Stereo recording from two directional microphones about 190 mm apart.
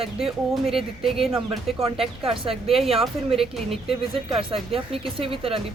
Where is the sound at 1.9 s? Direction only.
30° right (ahead or behind).